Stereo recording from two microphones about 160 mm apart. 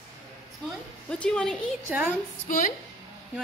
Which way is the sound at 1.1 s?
5° left (ahead or behind).